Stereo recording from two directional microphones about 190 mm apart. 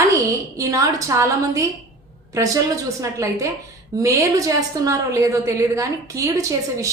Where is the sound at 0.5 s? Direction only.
15° right (ahead or behind).